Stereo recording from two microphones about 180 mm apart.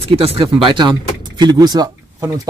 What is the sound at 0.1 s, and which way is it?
Speech, 30° right (ahead or behind).